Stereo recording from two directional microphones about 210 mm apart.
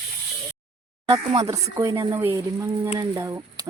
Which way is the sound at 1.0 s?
25° right (ahead or behind).